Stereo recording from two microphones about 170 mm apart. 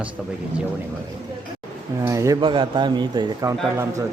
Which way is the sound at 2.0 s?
20° right (ahead or behind).